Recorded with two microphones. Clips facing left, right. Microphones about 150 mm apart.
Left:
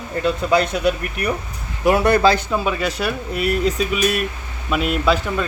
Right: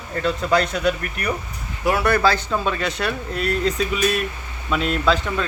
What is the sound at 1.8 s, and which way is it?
Speech, 20° left (ahead or behind).